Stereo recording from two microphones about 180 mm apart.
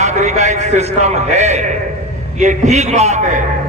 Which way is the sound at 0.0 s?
40° right (ahead or behind).